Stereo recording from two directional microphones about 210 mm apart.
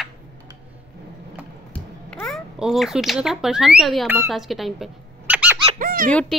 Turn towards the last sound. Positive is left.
turn(degrees=5)  # may be behind; listen again after turning